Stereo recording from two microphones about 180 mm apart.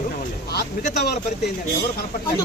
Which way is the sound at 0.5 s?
65° left (ahead or behind).